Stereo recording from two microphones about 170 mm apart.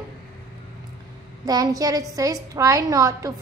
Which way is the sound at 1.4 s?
20° right (ahead or behind).